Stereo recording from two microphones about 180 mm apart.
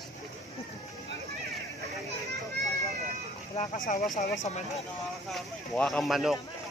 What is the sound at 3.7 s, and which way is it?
Speech, 45° left (ahead or behind).